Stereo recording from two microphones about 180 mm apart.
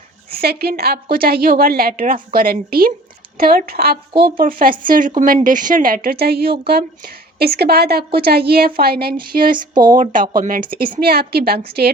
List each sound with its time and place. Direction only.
0.3 s a woman's voice: 55° right (ahead or behind)
9.7 s speech: 25° right (ahead or behind)
10.0 s a woman's voice: 50° right (ahead or behind)